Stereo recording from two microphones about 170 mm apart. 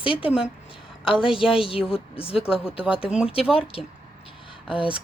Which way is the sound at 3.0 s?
5° right (ahead or behind).